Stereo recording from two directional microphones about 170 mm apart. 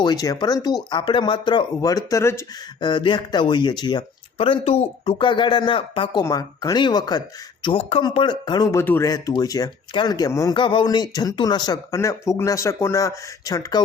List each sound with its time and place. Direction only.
0.0 s speech: 25° left (ahead or behind)
6.2 s speech: 20° left (ahead or behind)